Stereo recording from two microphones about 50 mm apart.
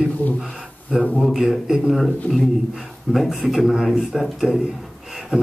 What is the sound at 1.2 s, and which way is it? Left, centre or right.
A man's voice, centre.